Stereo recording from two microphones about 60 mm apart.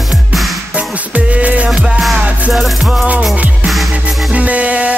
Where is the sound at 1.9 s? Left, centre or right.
Centre.